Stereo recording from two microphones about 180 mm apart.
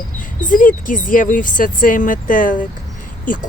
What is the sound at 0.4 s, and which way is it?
Speech, 50° left (ahead or behind).